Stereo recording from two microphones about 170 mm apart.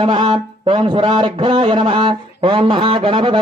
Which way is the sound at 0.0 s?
30° right (ahead or behind).